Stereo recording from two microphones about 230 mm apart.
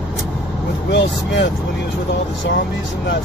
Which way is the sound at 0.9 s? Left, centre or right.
Left.